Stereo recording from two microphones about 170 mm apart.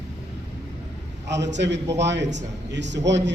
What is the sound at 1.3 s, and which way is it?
A man's voice, 90° right.